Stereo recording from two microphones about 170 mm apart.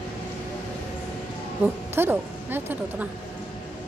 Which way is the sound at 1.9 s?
15° right (ahead or behind).